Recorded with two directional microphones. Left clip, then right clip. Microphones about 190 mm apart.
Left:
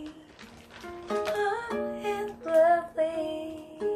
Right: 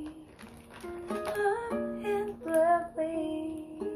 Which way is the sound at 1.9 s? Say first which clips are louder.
Left 1 dB; 10° left (ahead or behind).